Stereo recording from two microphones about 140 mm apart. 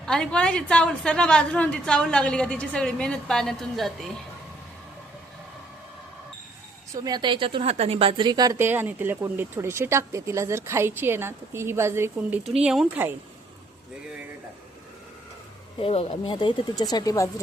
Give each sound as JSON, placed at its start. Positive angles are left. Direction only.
{"t": 0.0, "sound": "a woman's voice", "side_deg": 5}
{"t": 6.9, "sound": "a woman's voice", "side_deg": -25}
{"t": 8.5, "sound": "speech", "side_deg": -15}
{"t": 12.6, "sound": "speech", "side_deg": -5}
{"t": 15.8, "sound": "speech", "side_deg": 40}